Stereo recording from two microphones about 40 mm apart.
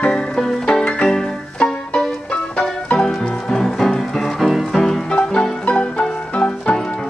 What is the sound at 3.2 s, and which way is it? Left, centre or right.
Music, centre.